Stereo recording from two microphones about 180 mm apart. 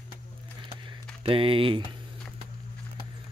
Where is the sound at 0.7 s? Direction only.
30° right (ahead or behind).